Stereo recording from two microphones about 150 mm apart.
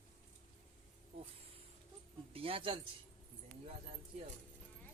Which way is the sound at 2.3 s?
40° right (ahead or behind).